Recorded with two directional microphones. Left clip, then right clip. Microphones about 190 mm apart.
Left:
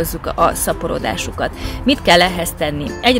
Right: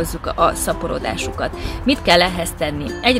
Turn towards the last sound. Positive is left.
turn(degrees=35)  # may be behind; listen again after turning